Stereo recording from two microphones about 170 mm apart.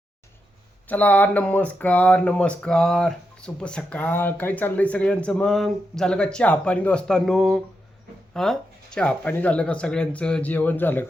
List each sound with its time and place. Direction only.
0.9 s speech: 10° left (ahead or behind)